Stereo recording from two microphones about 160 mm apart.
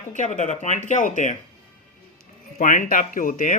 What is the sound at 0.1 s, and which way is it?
Speech, 50° left (ahead or behind).